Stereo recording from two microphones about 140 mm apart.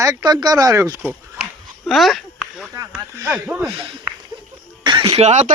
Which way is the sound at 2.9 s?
15° right (ahead or behind).